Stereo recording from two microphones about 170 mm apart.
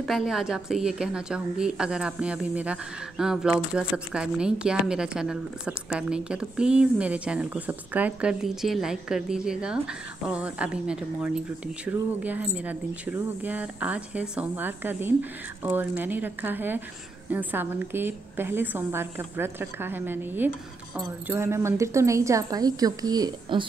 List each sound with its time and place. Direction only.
0.0 s a woman's voice: centre (ahead or behind); by 23.6 s 20° right (ahead or behind)